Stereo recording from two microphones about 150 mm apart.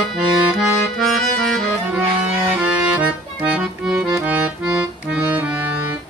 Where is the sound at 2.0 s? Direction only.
10° right (ahead or behind).